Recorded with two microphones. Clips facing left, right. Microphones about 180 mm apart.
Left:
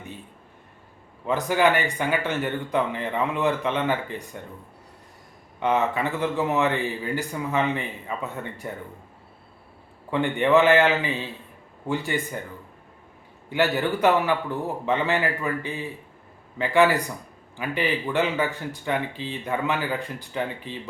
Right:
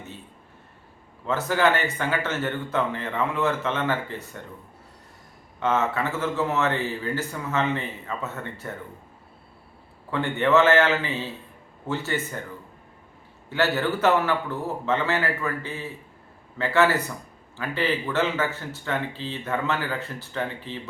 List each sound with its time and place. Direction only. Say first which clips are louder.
1.2 s a man's voice: left 1 dB; 15° left (ahead or behind)
5.5 s a man's voice: left 1 dB; 15° left (ahead or behind)
10.1 s a man's voice: left 1 dB; 15° left (ahead or behind)
13.5 s a man's voice: left 1 dB; 15° left (ahead or behind)